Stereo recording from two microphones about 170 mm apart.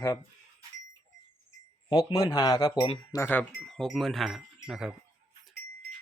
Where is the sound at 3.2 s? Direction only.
10° left (ahead or behind); by 4.9 s 5° right (ahead or behind).